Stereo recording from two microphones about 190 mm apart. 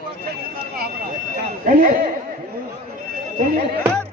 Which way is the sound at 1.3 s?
50° right (ahead or behind).